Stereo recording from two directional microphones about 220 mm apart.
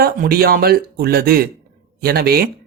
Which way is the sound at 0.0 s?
45° right (ahead or behind).